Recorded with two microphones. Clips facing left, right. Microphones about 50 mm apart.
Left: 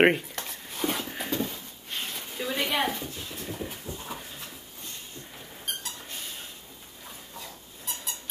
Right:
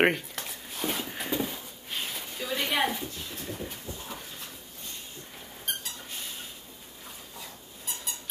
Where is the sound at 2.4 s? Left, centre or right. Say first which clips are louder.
Left 2 dB; centre.